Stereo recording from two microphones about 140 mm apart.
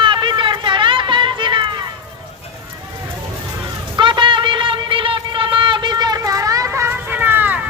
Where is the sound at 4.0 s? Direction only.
35° right (ahead or behind).